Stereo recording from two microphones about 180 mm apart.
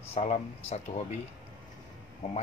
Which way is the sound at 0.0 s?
35° left (ahead or behind).